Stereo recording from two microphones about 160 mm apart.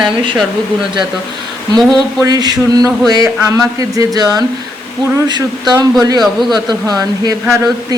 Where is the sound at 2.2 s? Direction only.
25° right (ahead or behind).